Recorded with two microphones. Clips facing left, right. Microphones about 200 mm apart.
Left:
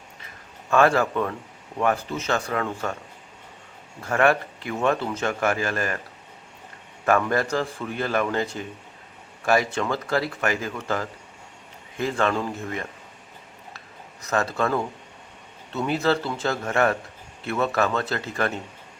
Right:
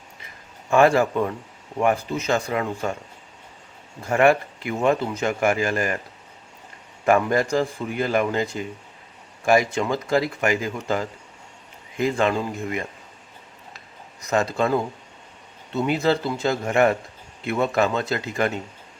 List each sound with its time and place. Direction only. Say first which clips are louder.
0.7 s speech: right 2 dB; 15° right (ahead or behind)
4.0 s speech: right 3 dB; 15° right (ahead or behind)
7.0 s a man's voice: right 3 dB; 15° right (ahead or behind)
14.3 s speech: right 3 dB; 15° right (ahead or behind)